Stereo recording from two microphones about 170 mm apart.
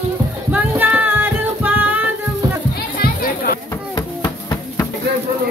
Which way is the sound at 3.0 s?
65° left (ahead or behind).